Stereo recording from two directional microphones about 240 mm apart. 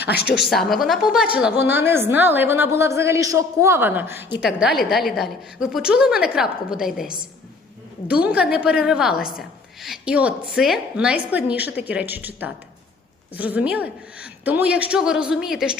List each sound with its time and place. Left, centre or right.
0.1 s a woman's voice: left
0.3 s a woman's voice: centre
8.0 s a woman's voice: centre